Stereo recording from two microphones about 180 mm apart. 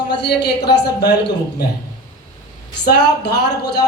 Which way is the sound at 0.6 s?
25° left (ahead or behind).